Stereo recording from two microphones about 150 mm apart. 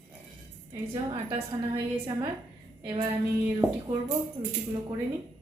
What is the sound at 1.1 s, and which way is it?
Speech, 35° right (ahead or behind).